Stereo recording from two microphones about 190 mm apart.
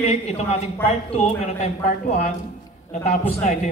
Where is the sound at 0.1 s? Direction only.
35° left (ahead or behind).